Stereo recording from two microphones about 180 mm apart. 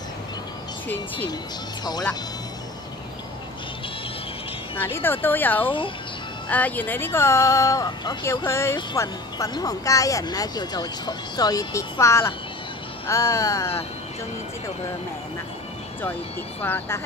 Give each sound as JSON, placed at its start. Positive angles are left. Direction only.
{"t": 4.7, "sound": "speech", "side_deg": 10}
{"t": 16.6, "sound": "speech", "side_deg": 10}